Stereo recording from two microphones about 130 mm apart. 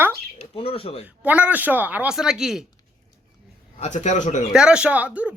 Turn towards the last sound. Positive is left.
turn(degrees=-10)  # may be behind; listen again after turning